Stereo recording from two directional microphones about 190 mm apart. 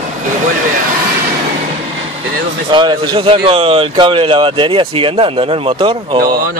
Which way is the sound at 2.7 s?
25° right (ahead or behind).